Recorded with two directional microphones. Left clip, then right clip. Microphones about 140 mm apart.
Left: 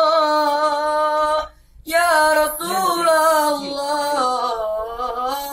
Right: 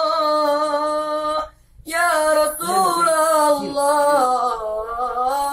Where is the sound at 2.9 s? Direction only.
25° right (ahead or behind).